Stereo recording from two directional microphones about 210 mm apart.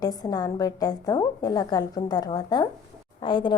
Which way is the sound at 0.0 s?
15° left (ahead or behind).